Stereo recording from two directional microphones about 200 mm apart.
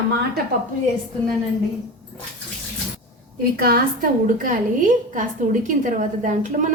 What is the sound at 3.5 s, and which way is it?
A woman's voice, 45° right (ahead or behind).